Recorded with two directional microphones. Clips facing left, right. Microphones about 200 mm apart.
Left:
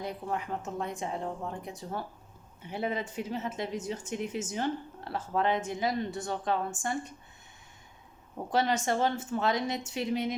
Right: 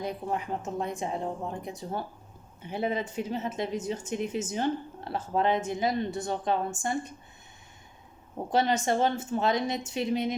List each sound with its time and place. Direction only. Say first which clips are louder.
0.0 s speech: right 3 dB; 20° right (ahead or behind)
8.5 s speech: right 2 dB; 20° right (ahead or behind)